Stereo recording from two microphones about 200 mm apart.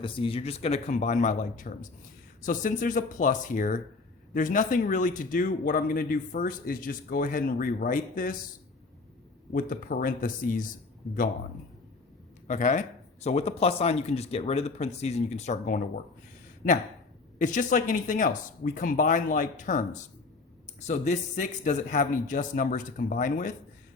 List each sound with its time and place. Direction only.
0.0 s a man's voice: 25° left (ahead or behind); by 8.4 s 45° left (ahead or behind)
9.5 s speech: 45° left (ahead or behind)
12.5 s a man's voice: 35° left (ahead or behind)
17.3 s a man's voice: 40° left (ahead or behind)